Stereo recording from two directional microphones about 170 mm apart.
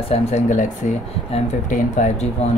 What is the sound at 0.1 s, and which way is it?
Speech, 45° left (ahead or behind).